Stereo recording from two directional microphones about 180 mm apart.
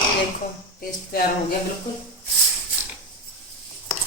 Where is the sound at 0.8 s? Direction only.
55° left (ahead or behind).